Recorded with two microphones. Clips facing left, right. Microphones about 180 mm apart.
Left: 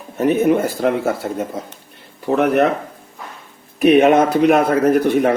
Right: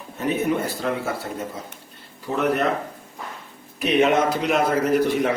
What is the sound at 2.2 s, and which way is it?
Speech, 60° left (ahead or behind).